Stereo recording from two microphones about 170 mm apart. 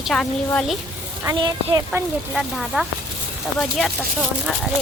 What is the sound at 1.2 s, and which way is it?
Speech, 25° right (ahead or behind).